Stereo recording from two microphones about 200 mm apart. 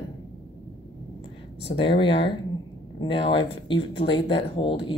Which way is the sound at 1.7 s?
25° left (ahead or behind).